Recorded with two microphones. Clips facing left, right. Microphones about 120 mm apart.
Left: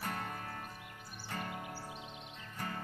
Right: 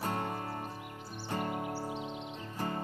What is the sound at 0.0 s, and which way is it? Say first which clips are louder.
Music: right 6 dB; 30° right (ahead or behind).